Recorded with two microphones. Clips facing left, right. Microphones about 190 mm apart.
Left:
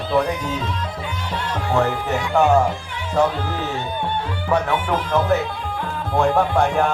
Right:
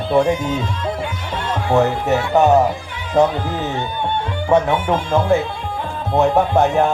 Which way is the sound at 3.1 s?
20° right (ahead or behind).